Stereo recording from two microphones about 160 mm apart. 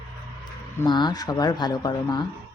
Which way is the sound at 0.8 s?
25° left (ahead or behind).